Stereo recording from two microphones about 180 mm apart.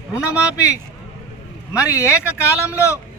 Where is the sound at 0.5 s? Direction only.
15° left (ahead or behind).